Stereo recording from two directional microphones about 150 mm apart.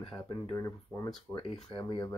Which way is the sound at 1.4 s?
35° left (ahead or behind).